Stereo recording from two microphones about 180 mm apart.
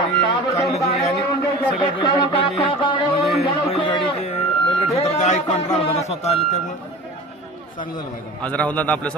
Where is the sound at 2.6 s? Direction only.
25° left (ahead or behind).